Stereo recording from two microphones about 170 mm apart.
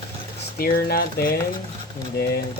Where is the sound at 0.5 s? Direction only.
60° left (ahead or behind).